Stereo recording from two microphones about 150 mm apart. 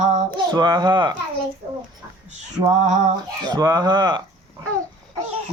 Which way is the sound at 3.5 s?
25° right (ahead or behind).